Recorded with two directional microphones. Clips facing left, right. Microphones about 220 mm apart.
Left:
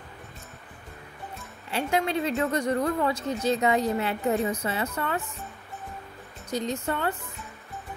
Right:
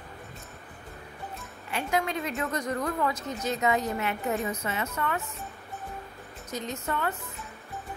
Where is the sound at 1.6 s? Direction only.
30° left (ahead or behind).